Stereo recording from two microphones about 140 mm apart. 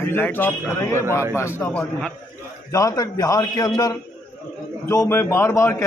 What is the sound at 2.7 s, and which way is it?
A man's voice, 25° left (ahead or behind).